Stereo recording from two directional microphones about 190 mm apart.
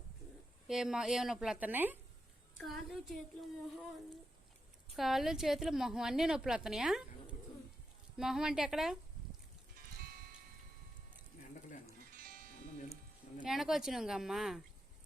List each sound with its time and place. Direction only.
0.7 s a woman's voice: 5° right (ahead or behind)
2.6 s a woman's voice: centre (ahead or behind)
4.9 s a woman's voice: centre (ahead or behind)
10.0 s music: 50° right (ahead or behind)
12.1 s music: 50° right (ahead or behind)
13.4 s a woman's voice: centre (ahead or behind)